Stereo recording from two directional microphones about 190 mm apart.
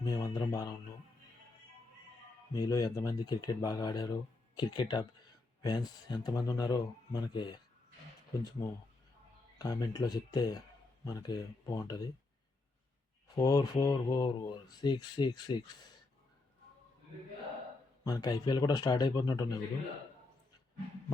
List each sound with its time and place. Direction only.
0.0 s speech: 20° left (ahead or behind)
2.5 s speech: 20° left (ahead or behind)
8.6 s speech: 15° left (ahead or behind)
13.2 s speech: 20° left (ahead or behind)
18.0 s speech: 20° left (ahead or behind)